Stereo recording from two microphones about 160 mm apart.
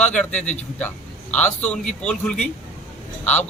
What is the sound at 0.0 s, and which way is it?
A man's voice, 5° left (ahead or behind).